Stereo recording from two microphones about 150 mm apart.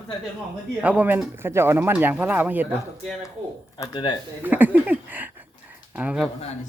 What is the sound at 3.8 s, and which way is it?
Speech, 30° left (ahead or behind).